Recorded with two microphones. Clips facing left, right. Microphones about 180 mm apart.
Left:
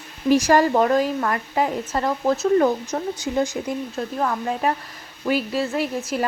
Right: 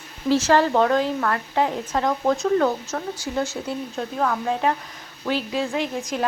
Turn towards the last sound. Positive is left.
turn(degrees=5)  # may be behind; listen again after turning